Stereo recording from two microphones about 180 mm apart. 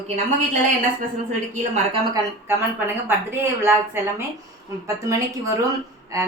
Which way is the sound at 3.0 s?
10° right (ahead or behind).